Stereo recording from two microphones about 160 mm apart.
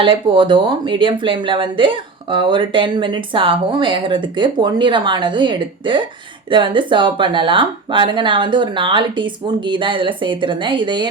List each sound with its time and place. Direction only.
0.0 s speech: 30° right (ahead or behind)